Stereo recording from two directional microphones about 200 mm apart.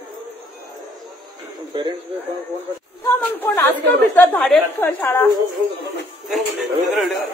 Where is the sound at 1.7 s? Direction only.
25° right (ahead or behind).